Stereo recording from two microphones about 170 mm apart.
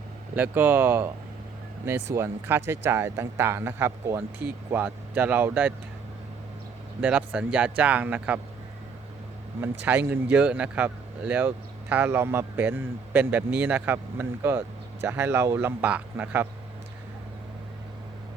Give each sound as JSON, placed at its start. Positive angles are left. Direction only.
{"t": 0.3, "sound": "speech", "side_deg": -10}
{"t": 2.1, "sound": "speech", "side_deg": -15}
{"t": 7.0, "sound": "speech", "side_deg": -10}
{"t": 9.8, "sound": "speech", "side_deg": -10}